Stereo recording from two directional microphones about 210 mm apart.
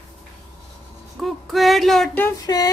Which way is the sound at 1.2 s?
Centre (ahead or behind).